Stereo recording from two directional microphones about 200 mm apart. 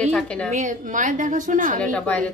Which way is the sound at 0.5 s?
40° right (ahead or behind).